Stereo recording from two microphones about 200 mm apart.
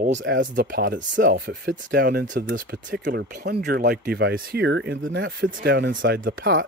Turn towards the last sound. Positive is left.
turn(degrees=-50)  # may be behind; listen again after turning